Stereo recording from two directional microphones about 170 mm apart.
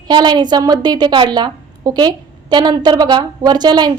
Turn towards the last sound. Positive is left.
turn(degrees=-25)  # may be behind; listen again after turning